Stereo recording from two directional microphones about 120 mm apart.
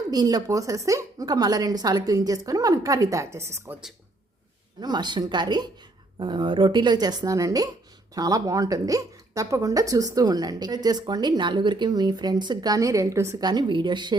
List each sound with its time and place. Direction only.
0.1 s a woman's voice: 30° right (ahead or behind)
4.8 s a woman's voice: 35° right (ahead or behind)
13.4 s a woman's voice: 35° right (ahead or behind)